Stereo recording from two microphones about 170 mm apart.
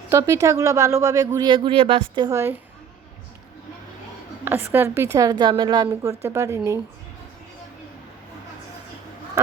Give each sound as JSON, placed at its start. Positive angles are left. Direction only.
{"t": 0.1, "sound": "a woman's voice", "side_deg": -15}
{"t": 4.4, "sound": "a woman's voice", "side_deg": -15}